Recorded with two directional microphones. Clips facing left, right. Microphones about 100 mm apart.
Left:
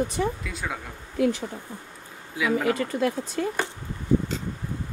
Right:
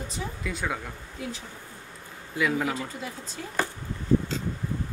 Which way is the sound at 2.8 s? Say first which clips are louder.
Left 10 dB; 65° left (ahead or behind).